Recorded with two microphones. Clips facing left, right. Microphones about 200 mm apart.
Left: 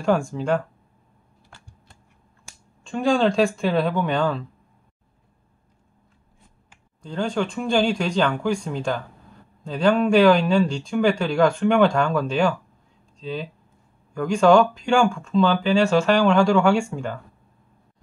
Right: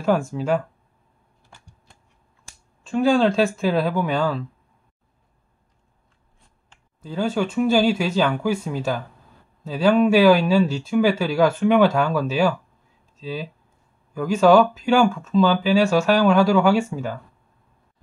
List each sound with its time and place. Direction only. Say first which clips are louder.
0.0 s speech: even; centre (ahead or behind)
2.8 s speech: right 2 dB; 5° right (ahead or behind)
7.0 s speech: right 2 dB; 5° right (ahead or behind)